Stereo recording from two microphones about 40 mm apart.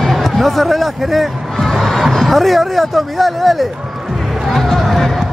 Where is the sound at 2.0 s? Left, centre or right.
Centre.